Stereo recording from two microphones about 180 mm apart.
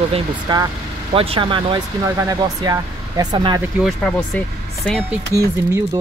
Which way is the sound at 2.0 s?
15° right (ahead or behind).